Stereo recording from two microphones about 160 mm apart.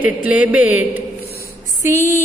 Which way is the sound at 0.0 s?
10° right (ahead or behind).